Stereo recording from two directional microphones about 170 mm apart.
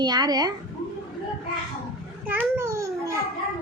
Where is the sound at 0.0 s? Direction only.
25° right (ahead or behind).